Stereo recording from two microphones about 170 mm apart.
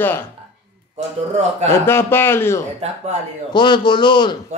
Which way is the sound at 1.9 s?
15° left (ahead or behind).